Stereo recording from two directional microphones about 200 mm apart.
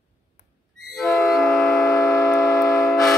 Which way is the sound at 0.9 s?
Centre (ahead or behind).